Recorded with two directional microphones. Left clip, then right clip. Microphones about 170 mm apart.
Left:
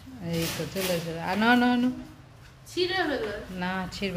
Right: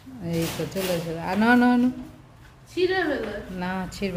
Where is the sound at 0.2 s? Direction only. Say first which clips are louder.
Right 3 dB; centre (ahead or behind).